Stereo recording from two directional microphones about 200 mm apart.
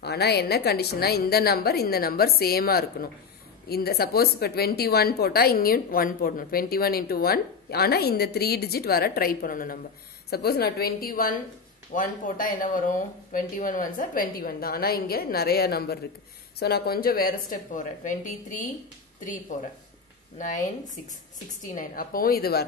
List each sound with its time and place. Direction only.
0.0 s speech: 55° left (ahead or behind)